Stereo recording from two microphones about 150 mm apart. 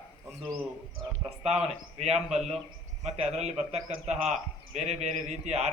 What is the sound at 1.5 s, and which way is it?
A man's voice, 45° right (ahead or behind).